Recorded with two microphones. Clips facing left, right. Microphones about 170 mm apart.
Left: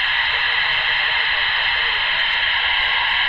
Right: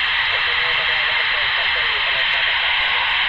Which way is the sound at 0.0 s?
45° left (ahead or behind).